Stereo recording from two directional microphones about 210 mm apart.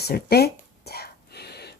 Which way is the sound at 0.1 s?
50° left (ahead or behind).